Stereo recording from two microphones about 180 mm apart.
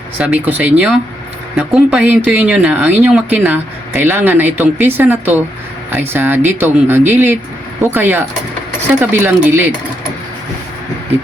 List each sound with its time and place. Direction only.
0.2 s a woman's voice: 10° right (ahead or behind)